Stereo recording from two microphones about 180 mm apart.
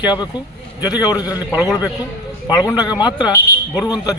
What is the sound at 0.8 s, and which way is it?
Speech, 20° left (ahead or behind).